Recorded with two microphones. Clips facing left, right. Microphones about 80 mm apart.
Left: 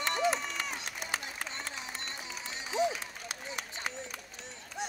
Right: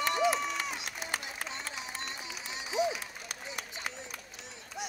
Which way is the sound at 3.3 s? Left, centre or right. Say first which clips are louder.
Left 2 dB; left.